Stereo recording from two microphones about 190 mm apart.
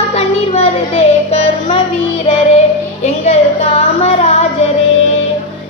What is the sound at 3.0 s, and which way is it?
A woman's voice, 35° left (ahead or behind).